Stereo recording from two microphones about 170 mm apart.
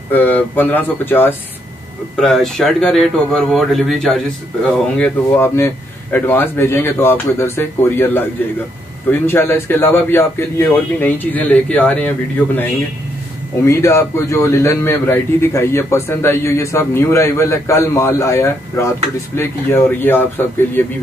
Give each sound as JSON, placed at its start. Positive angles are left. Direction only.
{"t": 0.1, "sound": "a man's voice", "side_deg": 10}
{"t": 2.1, "sound": "a man's voice", "side_deg": 0}
{"t": 13.7, "sound": "a man's voice", "side_deg": 15}